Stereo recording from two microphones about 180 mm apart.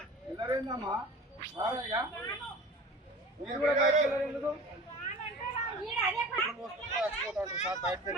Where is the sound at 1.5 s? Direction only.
20° right (ahead or behind).